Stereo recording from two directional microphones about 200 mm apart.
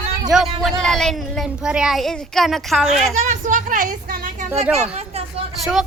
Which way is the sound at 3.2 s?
40° right (ahead or behind).